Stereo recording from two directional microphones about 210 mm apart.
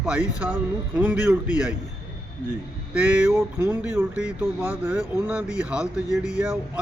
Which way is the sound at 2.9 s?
5° right (ahead or behind).